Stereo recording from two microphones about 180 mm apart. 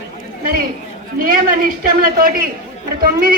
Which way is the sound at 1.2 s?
55° right (ahead or behind).